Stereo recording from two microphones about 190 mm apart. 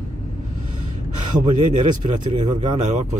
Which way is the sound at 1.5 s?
40° right (ahead or behind).